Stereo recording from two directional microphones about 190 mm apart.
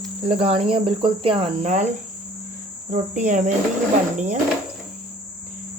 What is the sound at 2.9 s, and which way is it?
Speech, 40° right (ahead or behind).